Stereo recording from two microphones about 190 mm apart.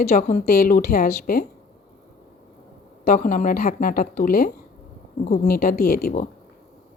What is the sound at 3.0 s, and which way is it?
A woman's voice, 45° left (ahead or behind).